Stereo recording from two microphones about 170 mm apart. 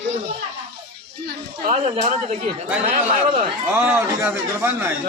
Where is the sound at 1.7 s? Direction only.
45° right (ahead or behind).